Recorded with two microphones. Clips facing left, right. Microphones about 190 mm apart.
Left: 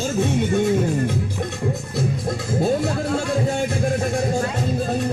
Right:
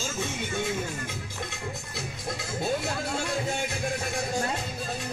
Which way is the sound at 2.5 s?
40° left (ahead or behind).